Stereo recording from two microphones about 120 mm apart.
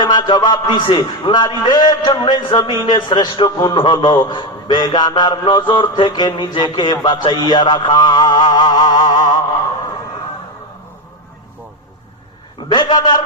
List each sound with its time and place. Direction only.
0.0 s a man's voice: 35° left (ahead or behind)
12.6 s a man's voice: 40° left (ahead or behind)